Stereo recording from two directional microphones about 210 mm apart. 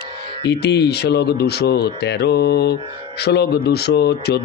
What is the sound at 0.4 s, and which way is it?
Speech, 50° left (ahead or behind).